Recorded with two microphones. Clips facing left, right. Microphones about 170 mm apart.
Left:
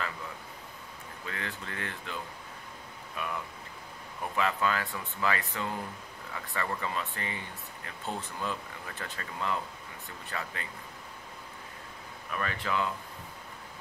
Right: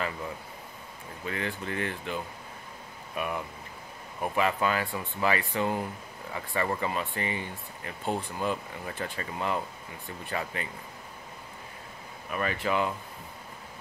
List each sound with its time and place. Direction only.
1.2 s speech: 20° right (ahead or behind)
3.2 s speech: 15° right (ahead or behind)
12.3 s speech: 15° right (ahead or behind)